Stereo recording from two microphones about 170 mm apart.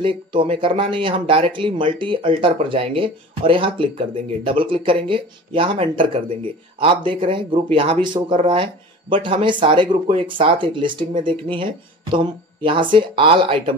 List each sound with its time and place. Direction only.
0.0 s speech: 30° right (ahead or behind)